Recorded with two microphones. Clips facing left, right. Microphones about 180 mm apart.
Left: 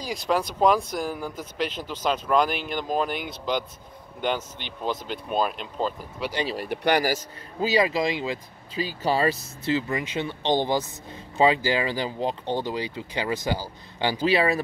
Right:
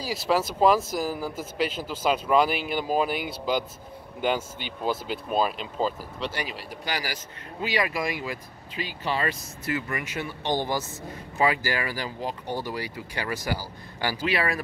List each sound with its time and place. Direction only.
0.0 s speech: 5° right (ahead or behind)
6.7 s speech: 60° left (ahead or behind)
7.6 s speech: 25° left (ahead or behind)
8.7 s speech: 35° left (ahead or behind)
9.7 s speech: 25° left (ahead or behind)